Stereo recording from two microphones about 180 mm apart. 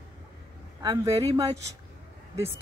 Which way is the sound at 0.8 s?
20° right (ahead or behind).